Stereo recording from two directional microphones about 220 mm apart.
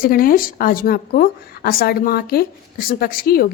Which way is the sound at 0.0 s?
40° left (ahead or behind).